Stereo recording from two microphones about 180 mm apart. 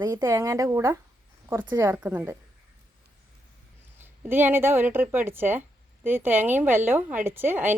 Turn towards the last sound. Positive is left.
turn(degrees=-10)  # may be behind; listen again after turning